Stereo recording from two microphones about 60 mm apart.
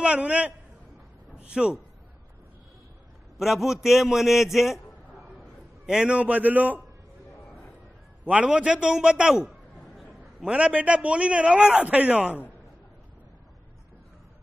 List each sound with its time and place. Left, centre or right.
0.0 s a man's voice: centre
3.3 s a man's voice: centre
6.0 s a man's voice: right
8.3 s a man's voice: right
9.8 s chatter: centre
10.4 s a man's voice: centre